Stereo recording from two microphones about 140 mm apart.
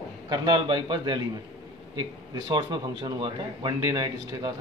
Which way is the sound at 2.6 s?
30° right (ahead or behind).